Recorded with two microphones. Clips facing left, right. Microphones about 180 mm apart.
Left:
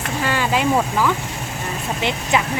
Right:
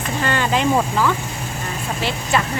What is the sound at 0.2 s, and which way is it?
Speech, 5° left (ahead or behind).